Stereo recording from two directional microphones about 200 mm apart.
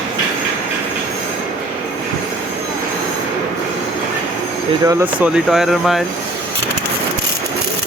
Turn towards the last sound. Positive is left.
turn(degrees=0)  # may be behind; listen again after turning